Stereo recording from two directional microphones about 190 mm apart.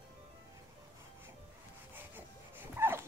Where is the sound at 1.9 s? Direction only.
10° right (ahead or behind).